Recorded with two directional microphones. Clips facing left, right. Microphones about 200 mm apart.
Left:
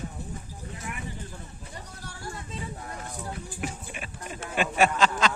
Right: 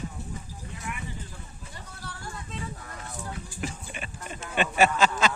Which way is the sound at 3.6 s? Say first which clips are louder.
Even; centre (ahead or behind).